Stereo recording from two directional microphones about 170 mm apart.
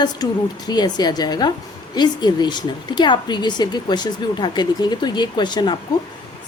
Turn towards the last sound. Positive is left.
turn(degrees=25)  # may be behind; listen again after turning